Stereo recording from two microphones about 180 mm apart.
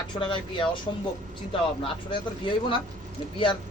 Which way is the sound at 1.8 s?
25° left (ahead or behind).